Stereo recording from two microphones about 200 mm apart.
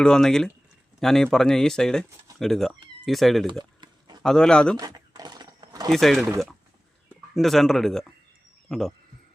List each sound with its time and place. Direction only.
0.0 s speech: 5° left (ahead or behind)
3.6 s a sound: 20° right (ahead or behind)
4.2 s speech: 5° left (ahead or behind)
4.8 s a sound: 20° right (ahead or behind)
5.9 s speech: centre (ahead or behind)
7.3 s speech: centre (ahead or behind)